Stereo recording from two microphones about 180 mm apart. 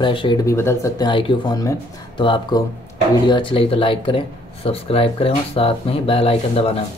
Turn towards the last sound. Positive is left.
turn(degrees=30)  # may be behind; listen again after turning